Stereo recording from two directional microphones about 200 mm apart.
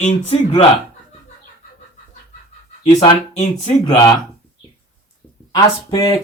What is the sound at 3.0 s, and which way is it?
Speech, 30° left (ahead or behind).